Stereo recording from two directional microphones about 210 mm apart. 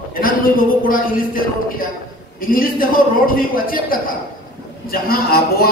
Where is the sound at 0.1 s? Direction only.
45° left (ahead or behind).